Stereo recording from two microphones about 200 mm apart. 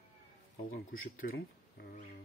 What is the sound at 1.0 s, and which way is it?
Speech, 50° left (ahead or behind).